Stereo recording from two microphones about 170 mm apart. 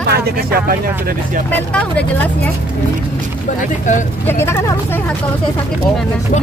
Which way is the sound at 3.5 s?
45° left (ahead or behind).